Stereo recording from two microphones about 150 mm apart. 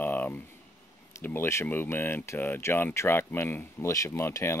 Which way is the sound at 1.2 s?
15° left (ahead or behind).